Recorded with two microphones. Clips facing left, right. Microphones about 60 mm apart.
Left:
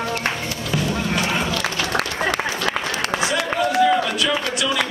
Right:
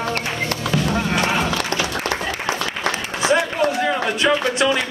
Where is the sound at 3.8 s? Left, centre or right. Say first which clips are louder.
Even; right.